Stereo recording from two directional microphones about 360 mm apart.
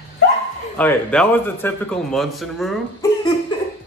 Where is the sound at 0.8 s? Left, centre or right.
Centre.